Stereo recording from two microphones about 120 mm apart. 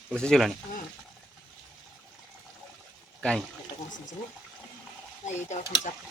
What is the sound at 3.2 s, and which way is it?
Speech, 5° left (ahead or behind).